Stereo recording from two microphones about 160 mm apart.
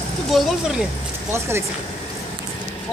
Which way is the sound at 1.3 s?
15° right (ahead or behind).